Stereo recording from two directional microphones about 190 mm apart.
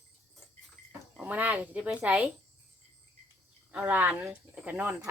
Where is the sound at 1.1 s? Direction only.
5° right (ahead or behind).